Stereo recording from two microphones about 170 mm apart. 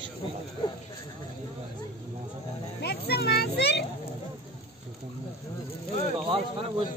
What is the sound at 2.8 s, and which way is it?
Music, 70° left (ahead or behind).